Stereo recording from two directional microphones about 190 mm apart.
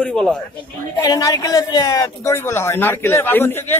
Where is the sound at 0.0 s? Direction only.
5° left (ahead or behind).